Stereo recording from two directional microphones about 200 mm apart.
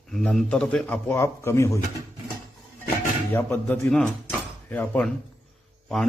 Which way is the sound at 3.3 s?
10° left (ahead or behind).